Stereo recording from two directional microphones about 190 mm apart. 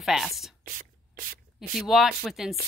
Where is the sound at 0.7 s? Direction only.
50° right (ahead or behind).